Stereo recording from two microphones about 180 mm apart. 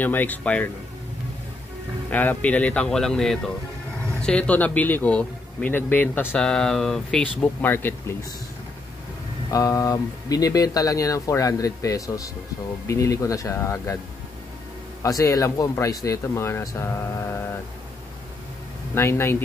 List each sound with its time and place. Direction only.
0.0 s speech: 10° left (ahead or behind)
2.0 s speech: 10° left (ahead or behind)
9.5 s speech: 20° left (ahead or behind)
15.0 s speech: 20° left (ahead or behind)
18.9 s speech: 15° left (ahead or behind)